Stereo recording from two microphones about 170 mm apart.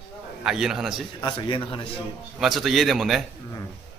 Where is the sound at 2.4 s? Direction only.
Centre (ahead or behind).